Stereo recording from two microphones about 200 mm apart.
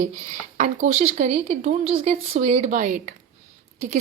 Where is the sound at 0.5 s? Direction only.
45° right (ahead or behind).